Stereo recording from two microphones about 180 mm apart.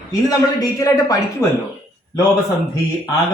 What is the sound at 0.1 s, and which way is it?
A man's voice, 20° left (ahead or behind).